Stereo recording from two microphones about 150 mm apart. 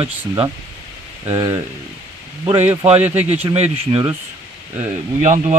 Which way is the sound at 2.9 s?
45° right (ahead or behind).